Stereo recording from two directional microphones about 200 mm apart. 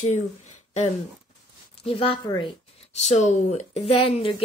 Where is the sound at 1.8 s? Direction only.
25° left (ahead or behind).